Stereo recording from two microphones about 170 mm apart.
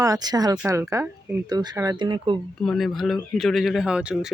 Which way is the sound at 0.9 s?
10° right (ahead or behind).